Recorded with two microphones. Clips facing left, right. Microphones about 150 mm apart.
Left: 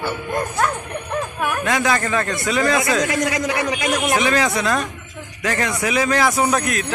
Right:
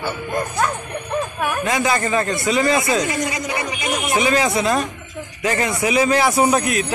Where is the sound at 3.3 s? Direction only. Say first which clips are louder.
Left 4 dB; 90° left.